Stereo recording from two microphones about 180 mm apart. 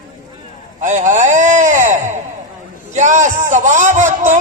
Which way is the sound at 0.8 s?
40° right (ahead or behind).